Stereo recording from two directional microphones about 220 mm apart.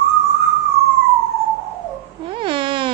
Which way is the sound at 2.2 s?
25° right (ahead or behind).